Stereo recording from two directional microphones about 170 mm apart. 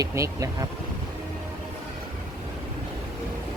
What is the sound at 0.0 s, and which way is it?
Speech, 20° right (ahead or behind).